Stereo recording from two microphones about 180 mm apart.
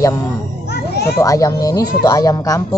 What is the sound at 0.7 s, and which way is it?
Children playing, 65° left (ahead or behind).